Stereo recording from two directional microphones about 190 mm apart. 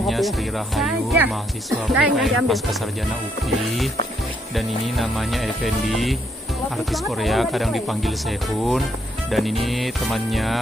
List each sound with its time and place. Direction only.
0.0 s speech: centre (ahead or behind)
9.3 s speech: centre (ahead or behind)